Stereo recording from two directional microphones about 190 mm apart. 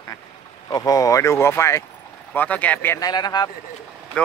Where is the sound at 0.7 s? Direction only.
20° left (ahead or behind).